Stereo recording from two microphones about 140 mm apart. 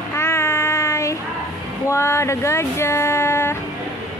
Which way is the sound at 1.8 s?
20° left (ahead or behind).